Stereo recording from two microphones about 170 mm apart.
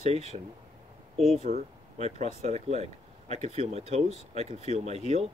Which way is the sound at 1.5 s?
50° right (ahead or behind).